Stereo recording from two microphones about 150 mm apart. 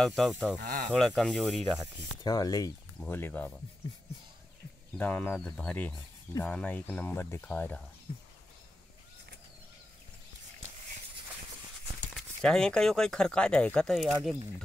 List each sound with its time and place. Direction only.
0.0 s speech: centre (ahead or behind)
0.6 s speech: 60° right (ahead or behind)
0.9 s speech: centre (ahead or behind)
2.2 s speech: 25° left (ahead or behind)
3.0 s speech: 15° left (ahead or behind)
4.9 s speech: 10° left (ahead or behind)
12.2 s speech: 5° left (ahead or behind)